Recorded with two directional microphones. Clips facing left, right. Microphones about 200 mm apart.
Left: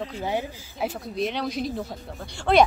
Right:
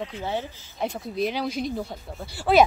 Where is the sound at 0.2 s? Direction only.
15° left (ahead or behind).